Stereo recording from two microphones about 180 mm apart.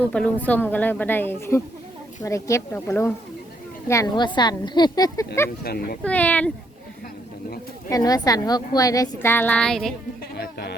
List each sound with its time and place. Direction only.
0.0 s a woman's voice: 5° left (ahead or behind)
5.6 s speech: 55° left (ahead or behind)
6.0 s a woman's voice: 10° left (ahead or behind)
7.9 s a woman's voice: 20° left (ahead or behind); by 9.9 s 5° left (ahead or behind)
10.3 s a sound: 65° left (ahead or behind)